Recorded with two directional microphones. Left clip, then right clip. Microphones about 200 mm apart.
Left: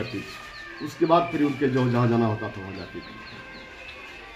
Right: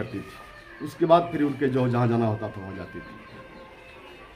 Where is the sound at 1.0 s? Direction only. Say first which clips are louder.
Right 1 dB; 15° right (ahead or behind).